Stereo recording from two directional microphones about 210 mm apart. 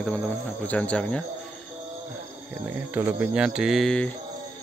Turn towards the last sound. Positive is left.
turn(degrees=5)  # may be behind; listen again after turning